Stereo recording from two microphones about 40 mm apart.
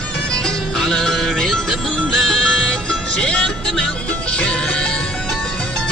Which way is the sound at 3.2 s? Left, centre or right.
Left.